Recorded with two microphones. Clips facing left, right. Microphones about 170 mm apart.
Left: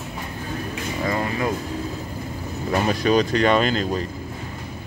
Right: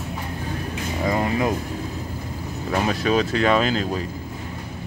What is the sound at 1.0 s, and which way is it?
Speech, 20° right (ahead or behind).